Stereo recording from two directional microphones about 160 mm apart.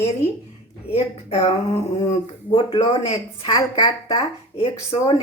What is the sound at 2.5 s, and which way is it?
Speech, 35° left (ahead or behind).